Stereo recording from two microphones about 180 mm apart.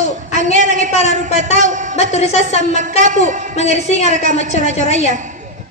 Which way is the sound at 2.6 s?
45° right (ahead or behind).